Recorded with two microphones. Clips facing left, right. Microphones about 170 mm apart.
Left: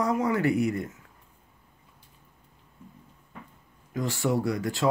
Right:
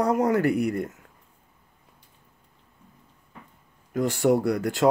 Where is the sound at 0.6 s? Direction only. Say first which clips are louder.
Right 2 dB; 60° right (ahead or behind).